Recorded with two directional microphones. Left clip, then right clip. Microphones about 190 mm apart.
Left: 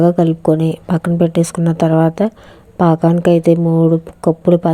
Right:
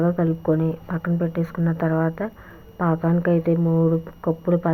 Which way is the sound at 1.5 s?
60° left (ahead or behind).